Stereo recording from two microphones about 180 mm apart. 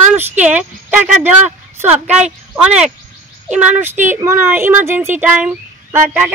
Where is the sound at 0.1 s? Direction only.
10° right (ahead or behind).